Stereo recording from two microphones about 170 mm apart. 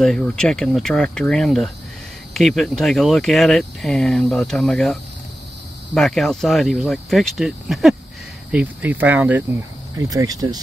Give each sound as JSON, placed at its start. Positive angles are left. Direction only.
{"t": 0.0, "sound": "speech", "side_deg": 5}
{"t": 5.9, "sound": "speech", "side_deg": 0}
{"t": 9.9, "sound": "speech", "side_deg": -20}